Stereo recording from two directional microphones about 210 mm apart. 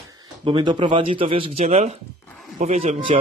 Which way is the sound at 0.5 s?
25° right (ahead or behind).